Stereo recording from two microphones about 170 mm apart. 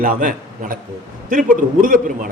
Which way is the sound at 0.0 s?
50° right (ahead or behind).